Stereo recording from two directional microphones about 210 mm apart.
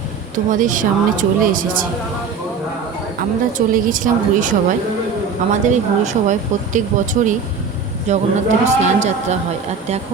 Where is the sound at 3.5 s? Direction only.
40° right (ahead or behind).